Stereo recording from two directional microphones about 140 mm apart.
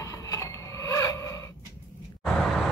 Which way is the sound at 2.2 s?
Centre (ahead or behind).